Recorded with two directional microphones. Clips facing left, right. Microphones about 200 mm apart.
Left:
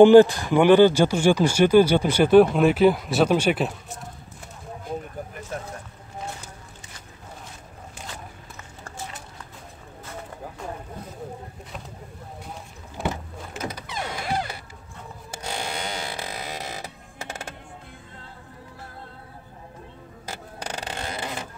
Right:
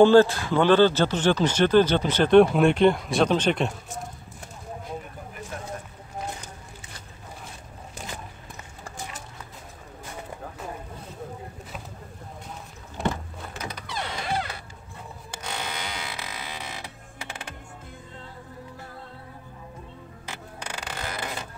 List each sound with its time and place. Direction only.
0.0 s speech: 15° left (ahead or behind)
13.1 s power windows: 20° left (ahead or behind)
15.4 s creak: 30° left (ahead or behind)
20.2 s a sound: 35° left (ahead or behind)